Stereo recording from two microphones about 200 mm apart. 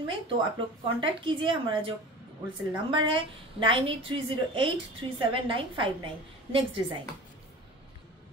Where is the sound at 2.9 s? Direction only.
25° right (ahead or behind).